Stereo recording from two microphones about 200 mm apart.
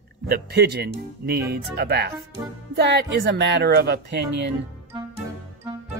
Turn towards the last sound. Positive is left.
turn(degrees=-55)  # may be behind; listen again after turning